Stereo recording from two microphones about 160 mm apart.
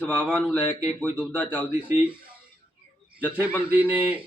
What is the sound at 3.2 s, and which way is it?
A man's voice, 10° right (ahead or behind).